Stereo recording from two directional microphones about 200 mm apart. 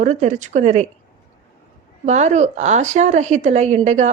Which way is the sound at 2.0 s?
35° right (ahead or behind).